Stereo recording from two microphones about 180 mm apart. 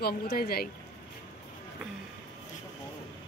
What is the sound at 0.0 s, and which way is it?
Speech, 60° left (ahead or behind).